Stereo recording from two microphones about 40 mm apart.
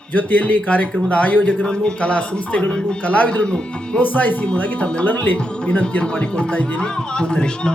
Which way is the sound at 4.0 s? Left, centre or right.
Left.